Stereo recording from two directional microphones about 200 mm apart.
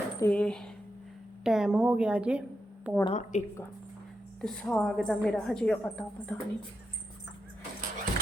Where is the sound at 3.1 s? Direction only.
35° left (ahead or behind).